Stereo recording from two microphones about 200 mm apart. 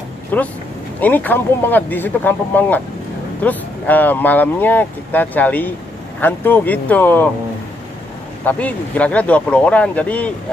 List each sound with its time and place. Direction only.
0.3 s speech: 10° left (ahead or behind)
8.5 s speech: 5° left (ahead or behind)